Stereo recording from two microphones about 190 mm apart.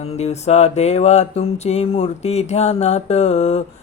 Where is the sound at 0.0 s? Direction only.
35° left (ahead or behind).